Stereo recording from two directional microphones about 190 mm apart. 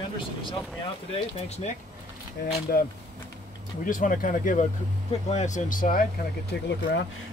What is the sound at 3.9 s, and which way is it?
Speech, 45° left (ahead or behind).